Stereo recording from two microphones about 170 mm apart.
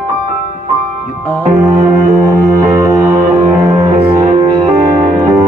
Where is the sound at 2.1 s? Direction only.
20° right (ahead or behind).